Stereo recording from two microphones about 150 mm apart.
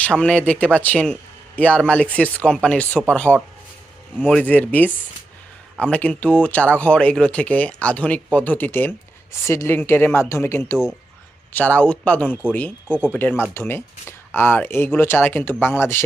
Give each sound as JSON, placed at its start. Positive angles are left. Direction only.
{"t": 0.0, "sound": "speech", "side_deg": 5}